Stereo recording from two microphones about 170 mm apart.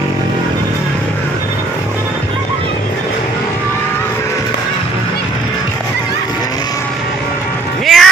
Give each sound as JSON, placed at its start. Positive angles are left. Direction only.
{"t": 7.8, "sound": "music", "side_deg": 0}